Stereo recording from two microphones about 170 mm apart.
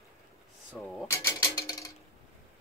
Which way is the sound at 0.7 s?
Centre (ahead or behind).